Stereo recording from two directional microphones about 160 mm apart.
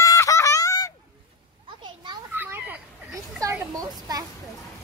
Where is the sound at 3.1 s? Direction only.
20° right (ahead or behind).